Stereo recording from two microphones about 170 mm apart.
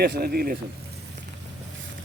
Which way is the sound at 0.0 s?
65° right (ahead or behind).